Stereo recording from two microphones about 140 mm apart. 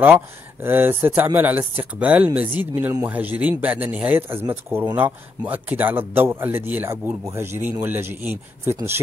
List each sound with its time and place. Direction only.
0.0 s speech: 15° right (ahead or behind)